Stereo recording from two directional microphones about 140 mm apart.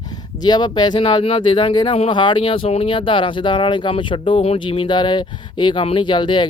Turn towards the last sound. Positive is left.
turn(degrees=35)  # may be behind; listen again after turning